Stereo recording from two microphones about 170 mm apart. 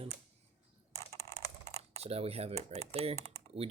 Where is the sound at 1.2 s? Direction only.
15° left (ahead or behind).